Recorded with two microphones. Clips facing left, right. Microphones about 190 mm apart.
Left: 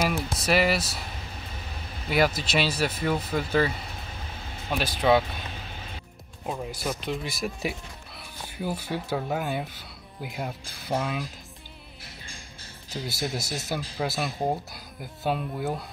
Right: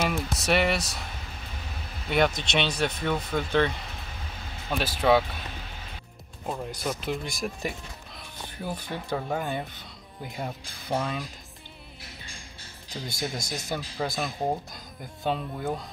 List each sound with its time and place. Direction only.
0.0 s speech: centre (ahead or behind)
2.0 s speech: 5° left (ahead or behind)
6.4 s speech: centre (ahead or behind)
12.9 s speech: 5° left (ahead or behind)